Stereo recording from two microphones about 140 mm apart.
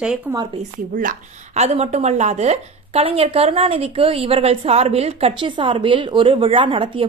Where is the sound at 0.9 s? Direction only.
60° right (ahead or behind).